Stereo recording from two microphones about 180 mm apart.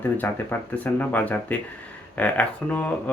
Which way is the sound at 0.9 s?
10° left (ahead or behind).